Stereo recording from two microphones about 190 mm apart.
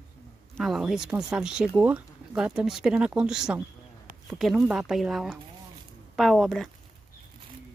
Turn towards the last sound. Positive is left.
turn(degrees=0)  # may be behind; listen again after turning